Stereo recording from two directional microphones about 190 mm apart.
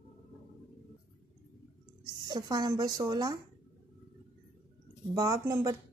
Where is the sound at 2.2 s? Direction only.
20° right (ahead or behind).